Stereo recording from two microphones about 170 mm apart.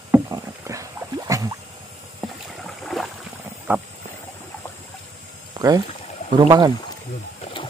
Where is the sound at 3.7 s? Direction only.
10° right (ahead or behind).